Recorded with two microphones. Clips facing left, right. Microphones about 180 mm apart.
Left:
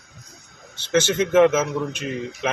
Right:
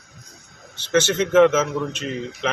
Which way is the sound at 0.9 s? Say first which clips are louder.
Right 1 dB; 10° left (ahead or behind).